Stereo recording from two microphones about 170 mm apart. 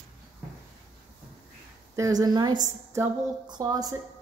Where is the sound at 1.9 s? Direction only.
20° right (ahead or behind).